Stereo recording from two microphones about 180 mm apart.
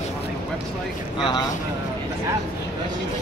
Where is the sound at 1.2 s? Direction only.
25° left (ahead or behind).